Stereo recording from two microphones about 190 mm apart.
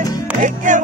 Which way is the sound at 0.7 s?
40° right (ahead or behind).